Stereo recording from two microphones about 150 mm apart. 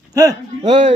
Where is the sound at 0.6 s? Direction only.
40° right (ahead or behind).